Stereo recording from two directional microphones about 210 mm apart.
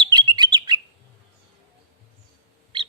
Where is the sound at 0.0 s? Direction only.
20° right (ahead or behind).